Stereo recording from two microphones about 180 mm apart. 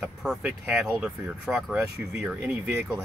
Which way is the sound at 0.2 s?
5° right (ahead or behind).